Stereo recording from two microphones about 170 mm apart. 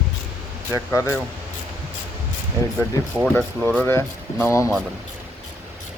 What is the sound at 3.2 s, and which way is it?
Speech, 5° left (ahead or behind).